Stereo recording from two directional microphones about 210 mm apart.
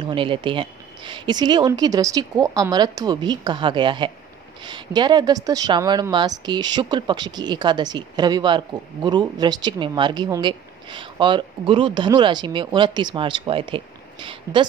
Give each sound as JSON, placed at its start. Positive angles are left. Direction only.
{"t": 0.0, "sound": "speech", "side_deg": -25}